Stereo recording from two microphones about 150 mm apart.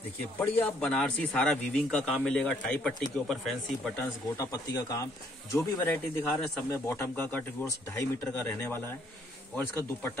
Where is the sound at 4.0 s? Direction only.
20° left (ahead or behind).